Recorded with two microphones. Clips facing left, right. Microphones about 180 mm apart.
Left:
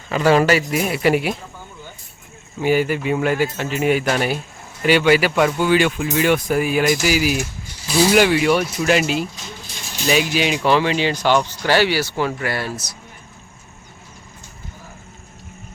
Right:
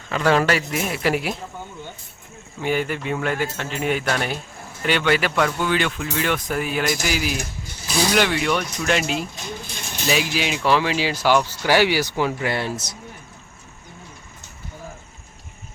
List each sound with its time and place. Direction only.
0.1 s speech: 5° left (ahead or behind)
2.6 s speech: 5° left (ahead or behind)
9.4 s mechanisms: 55° right (ahead or behind)
10.1 s speech: centre (ahead or behind); by 13.0 s 20° right (ahead or behind)